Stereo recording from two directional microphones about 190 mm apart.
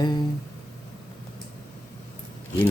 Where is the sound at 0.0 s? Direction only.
20° left (ahead or behind).